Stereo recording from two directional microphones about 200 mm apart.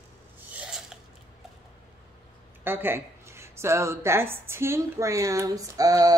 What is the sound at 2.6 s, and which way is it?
A woman's voice, 10° right (ahead or behind).